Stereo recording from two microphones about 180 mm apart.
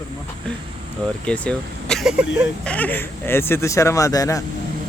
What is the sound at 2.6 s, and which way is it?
Speech, 10° left (ahead or behind).